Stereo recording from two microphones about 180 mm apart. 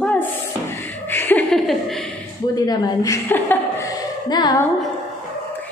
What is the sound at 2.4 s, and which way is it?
Speech, 20° left (ahead or behind).